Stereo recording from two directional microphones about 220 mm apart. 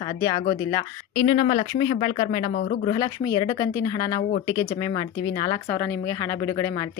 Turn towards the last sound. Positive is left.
turn(degrees=15)  # may be behind; listen again after turning